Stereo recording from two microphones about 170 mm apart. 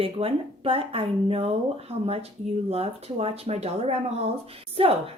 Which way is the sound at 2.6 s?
35° right (ahead or behind).